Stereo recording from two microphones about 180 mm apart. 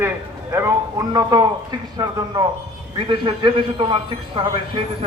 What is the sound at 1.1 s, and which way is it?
Speech, 20° right (ahead or behind).